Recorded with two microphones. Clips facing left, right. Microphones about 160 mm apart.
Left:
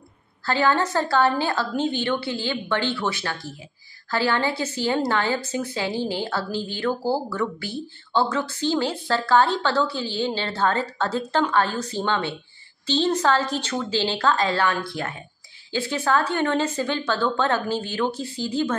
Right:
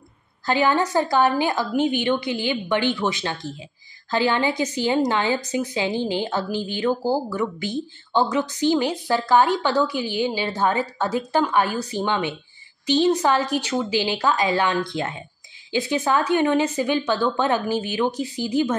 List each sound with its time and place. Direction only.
0.5 s a woman's voice: 15° right (ahead or behind)